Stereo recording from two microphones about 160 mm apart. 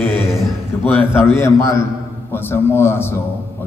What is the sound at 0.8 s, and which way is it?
A man's voice, 15° left (ahead or behind).